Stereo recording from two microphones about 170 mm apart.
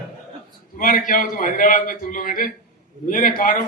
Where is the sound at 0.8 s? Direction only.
55° left (ahead or behind).